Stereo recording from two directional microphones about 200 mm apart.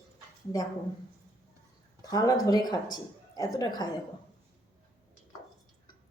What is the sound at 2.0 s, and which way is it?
A woman's voice, 20° left (ahead or behind).